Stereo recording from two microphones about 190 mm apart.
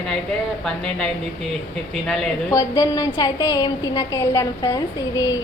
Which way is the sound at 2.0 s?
Centre (ahead or behind).